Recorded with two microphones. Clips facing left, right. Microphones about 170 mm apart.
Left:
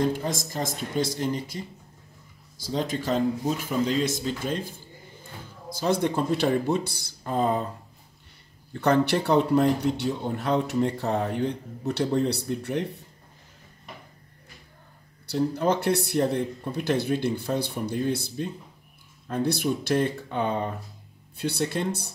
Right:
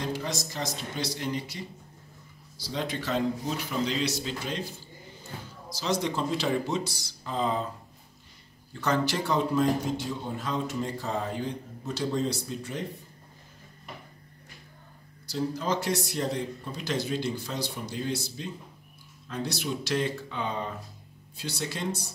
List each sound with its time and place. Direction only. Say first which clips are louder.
0.0 s speech: left 6 dB; 50° left (ahead or behind)
8.8 s speech: left 6 dB; 60° left (ahead or behind)
15.2 s speech: left 6 dB; 60° left (ahead or behind)